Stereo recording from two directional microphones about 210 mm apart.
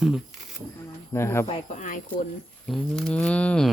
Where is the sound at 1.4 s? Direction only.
30° left (ahead or behind).